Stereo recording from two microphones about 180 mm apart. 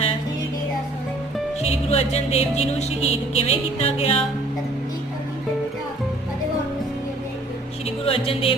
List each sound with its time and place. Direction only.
1.6 s music: 35° left (ahead or behind)
7.9 s music: 30° left (ahead or behind)